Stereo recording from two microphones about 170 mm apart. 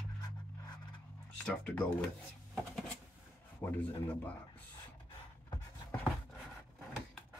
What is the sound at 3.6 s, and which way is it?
Speech, 15° left (ahead or behind).